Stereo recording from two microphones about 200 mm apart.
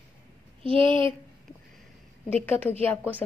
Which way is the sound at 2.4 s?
10° left (ahead or behind).